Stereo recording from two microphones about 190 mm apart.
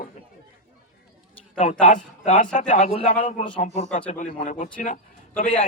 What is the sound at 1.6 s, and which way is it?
A man's voice, 40° left (ahead or behind).